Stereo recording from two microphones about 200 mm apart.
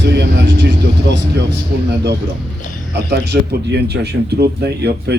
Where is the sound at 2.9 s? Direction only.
60° right (ahead or behind).